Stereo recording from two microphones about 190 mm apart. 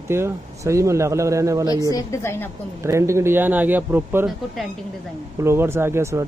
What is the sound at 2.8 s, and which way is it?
Speech, 15° right (ahead or behind).